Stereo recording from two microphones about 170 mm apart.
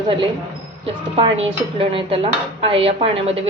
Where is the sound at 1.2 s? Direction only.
30° right (ahead or behind).